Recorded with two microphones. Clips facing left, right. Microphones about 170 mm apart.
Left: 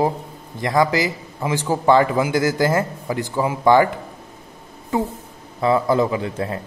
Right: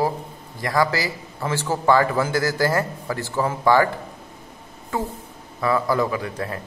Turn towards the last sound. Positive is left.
turn(degrees=25)  # may be behind; listen again after turning